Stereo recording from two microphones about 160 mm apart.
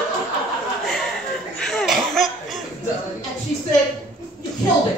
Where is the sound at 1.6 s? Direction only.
5° left (ahead or behind).